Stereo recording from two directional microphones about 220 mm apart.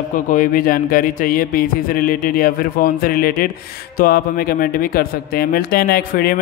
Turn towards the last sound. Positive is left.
turn(degrees=45)  # may be behind; listen again after turning